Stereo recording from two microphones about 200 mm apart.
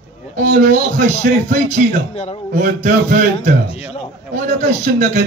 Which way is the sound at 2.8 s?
40° right (ahead or behind).